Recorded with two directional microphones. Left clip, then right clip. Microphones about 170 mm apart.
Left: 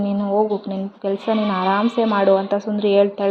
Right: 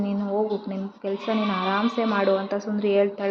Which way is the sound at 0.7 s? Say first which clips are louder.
Left 6 dB; 30° left (ahead or behind).